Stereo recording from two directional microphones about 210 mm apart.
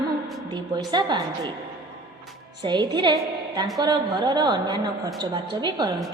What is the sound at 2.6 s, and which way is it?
A woman's voice, 20° right (ahead or behind).